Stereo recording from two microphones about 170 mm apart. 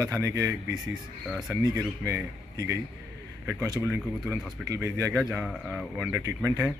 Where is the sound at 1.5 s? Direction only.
20° right (ahead or behind).